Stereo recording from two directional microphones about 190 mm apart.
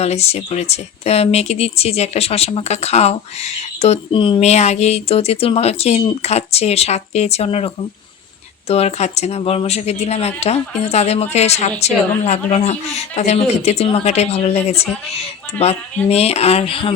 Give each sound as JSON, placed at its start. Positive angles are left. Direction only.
{"t": 0.0, "sound": "speech", "side_deg": 35}